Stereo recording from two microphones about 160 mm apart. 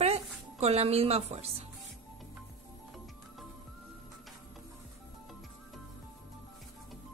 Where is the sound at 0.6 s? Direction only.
40° right (ahead or behind).